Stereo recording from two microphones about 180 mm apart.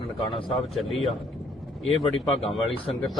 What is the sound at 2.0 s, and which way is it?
Speech, 30° left (ahead or behind).